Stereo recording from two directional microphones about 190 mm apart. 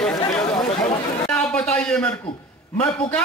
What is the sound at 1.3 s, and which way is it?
A man's voice, 5° left (ahead or behind).